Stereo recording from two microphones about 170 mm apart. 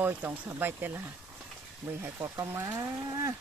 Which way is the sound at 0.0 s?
10° right (ahead or behind).